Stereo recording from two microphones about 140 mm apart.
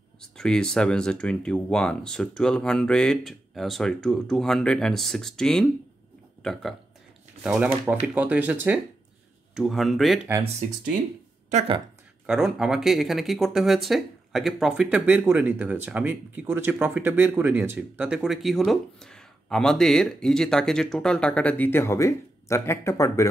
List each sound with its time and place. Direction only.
0.2 s speech: 5° left (ahead or behind)
11.5 s speech: 40° right (ahead or behind)
12.3 s speech: 5° right (ahead or behind); by 23.2 s 20° left (ahead or behind)